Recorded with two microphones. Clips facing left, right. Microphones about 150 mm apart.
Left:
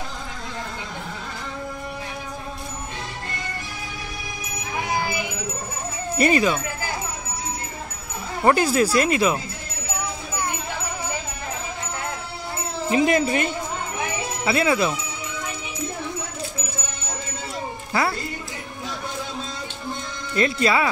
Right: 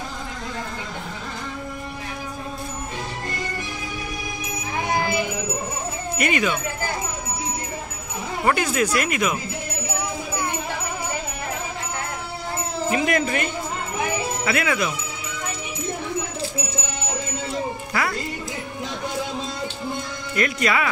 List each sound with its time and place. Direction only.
6.1 s speech: 35° left (ahead or behind)
8.5 s speech: 35° left (ahead or behind)
12.9 s speech: 25° left (ahead or behind)
20.3 s speech: 30° left (ahead or behind)